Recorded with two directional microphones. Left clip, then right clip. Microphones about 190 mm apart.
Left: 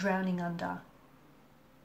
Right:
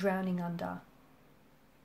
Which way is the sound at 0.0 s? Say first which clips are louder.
Left 1 dB; 50° right (ahead or behind).